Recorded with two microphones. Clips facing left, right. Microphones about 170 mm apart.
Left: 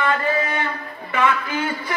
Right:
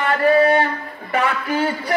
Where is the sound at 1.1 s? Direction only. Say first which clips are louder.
Right 1 dB; 35° right (ahead or behind).